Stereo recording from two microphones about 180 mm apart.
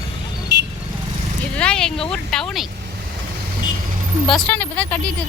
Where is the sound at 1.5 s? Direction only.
5° left (ahead or behind).